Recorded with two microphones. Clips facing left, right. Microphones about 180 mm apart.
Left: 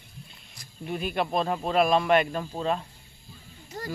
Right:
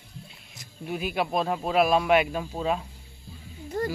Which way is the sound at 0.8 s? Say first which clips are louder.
Even; 5° right (ahead or behind).